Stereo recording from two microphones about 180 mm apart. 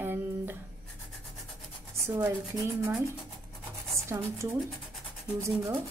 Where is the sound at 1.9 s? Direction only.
15° right (ahead or behind).